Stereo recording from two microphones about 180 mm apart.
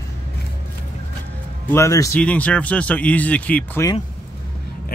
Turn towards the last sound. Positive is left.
turn(degrees=10)  # may be behind; listen again after turning